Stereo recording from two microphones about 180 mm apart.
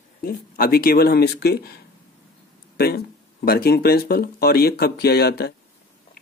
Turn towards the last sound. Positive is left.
turn(degrees=60)  # may be behind; listen again after turning